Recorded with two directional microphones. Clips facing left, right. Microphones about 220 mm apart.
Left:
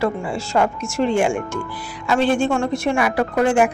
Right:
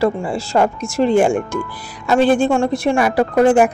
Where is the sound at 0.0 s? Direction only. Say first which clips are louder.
Right 4 dB; 35° right (ahead or behind).